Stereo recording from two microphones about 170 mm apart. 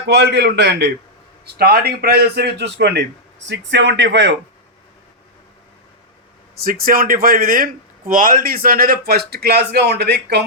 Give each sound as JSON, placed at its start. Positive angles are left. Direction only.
{"t": 0.1, "sound": "a man's voice", "side_deg": -90}
{"t": 1.5, "sound": "a man's voice", "side_deg": -65}
{"t": 6.6, "sound": "speech", "side_deg": -60}